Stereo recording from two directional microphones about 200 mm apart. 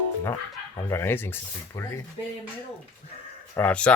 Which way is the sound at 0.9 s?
10° left (ahead or behind).